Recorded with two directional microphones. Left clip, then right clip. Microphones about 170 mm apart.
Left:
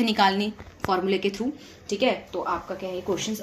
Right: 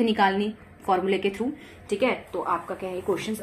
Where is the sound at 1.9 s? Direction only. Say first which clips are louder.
Left 1 dB; centre (ahead or behind).